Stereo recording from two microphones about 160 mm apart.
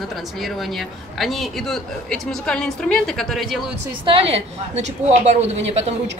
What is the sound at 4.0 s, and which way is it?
A woman's voice, 35° right (ahead or behind).